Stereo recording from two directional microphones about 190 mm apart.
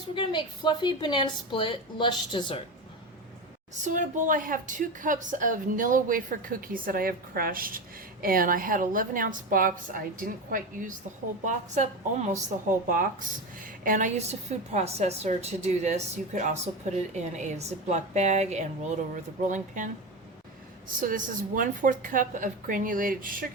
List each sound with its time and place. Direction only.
0.1 s a woman's voice: 25° left (ahead or behind)
3.8 s a woman's voice: 40° right (ahead or behind)
21.0 s a woman's voice: 45° right (ahead or behind)